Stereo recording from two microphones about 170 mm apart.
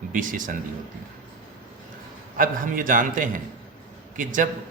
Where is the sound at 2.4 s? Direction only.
50° right (ahead or behind).